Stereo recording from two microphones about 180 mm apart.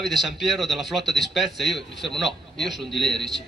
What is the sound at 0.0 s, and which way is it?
A man's voice, centre (ahead or behind).